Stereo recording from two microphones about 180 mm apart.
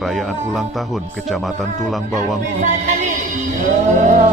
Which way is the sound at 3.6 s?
45° right (ahead or behind).